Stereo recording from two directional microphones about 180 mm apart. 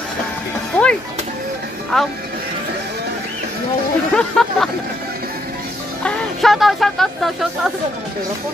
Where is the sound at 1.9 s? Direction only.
Centre (ahead or behind).